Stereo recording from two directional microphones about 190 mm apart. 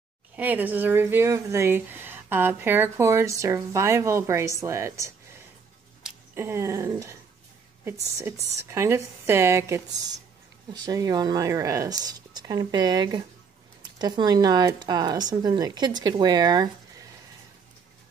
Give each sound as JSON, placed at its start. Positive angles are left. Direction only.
{"t": 0.4, "sound": "speech", "side_deg": -10}
{"t": 6.3, "sound": "speech", "side_deg": -15}
{"t": 8.2, "sound": "speech", "side_deg": -15}